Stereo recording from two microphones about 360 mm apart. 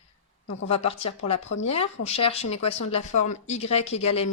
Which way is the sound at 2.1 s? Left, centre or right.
Centre.